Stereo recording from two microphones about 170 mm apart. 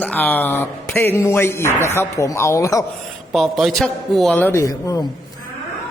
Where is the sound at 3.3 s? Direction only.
Centre (ahead or behind).